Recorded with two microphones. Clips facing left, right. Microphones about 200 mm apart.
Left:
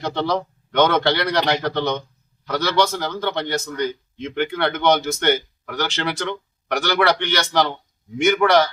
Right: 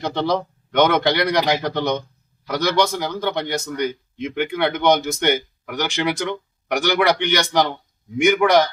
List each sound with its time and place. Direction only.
0.0 s a man's voice: 15° right (ahead or behind)